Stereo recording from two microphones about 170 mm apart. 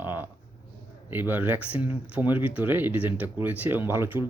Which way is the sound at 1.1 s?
10° right (ahead or behind).